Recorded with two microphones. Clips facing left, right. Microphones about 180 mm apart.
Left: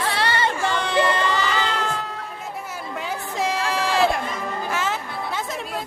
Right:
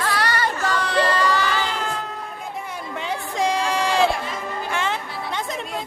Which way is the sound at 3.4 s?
5° left (ahead or behind).